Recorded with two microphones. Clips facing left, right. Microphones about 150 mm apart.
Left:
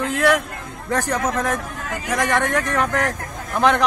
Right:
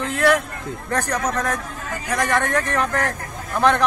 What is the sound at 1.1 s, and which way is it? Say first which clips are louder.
Speech: left 1 dB; 5° left (ahead or behind).